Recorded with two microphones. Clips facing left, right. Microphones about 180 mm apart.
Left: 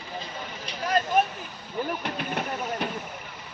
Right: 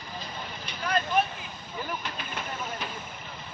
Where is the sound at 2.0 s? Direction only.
65° left (ahead or behind).